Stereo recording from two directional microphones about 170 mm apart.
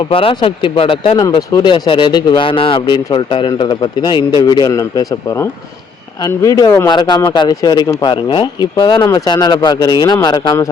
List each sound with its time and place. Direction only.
0.1 s speech: 35° left (ahead or behind)